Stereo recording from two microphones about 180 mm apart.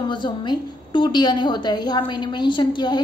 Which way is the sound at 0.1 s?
25° left (ahead or behind).